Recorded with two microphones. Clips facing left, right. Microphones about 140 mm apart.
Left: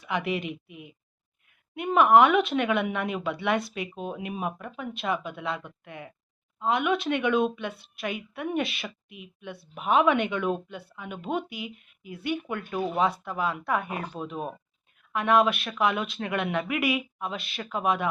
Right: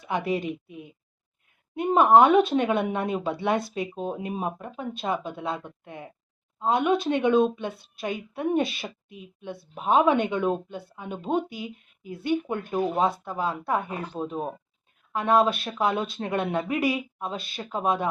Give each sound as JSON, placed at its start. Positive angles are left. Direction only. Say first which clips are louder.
{"t": 0.0, "sound": "a woman's voice", "louder": "right 2 dB", "side_deg": -25}
{"t": 1.8, "sound": "speech", "louder": "right 2 dB", "side_deg": -30}
{"t": 9.1, "sound": "speech", "louder": "right 2 dB", "side_deg": -35}
{"t": 9.5, "sound": "speech", "louder": "right 2 dB", "side_deg": -25}